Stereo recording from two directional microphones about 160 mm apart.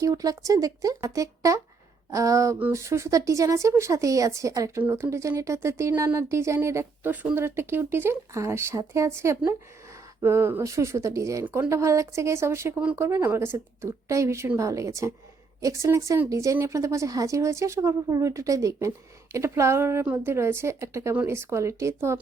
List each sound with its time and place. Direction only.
0.0 s speech: 20° right (ahead or behind)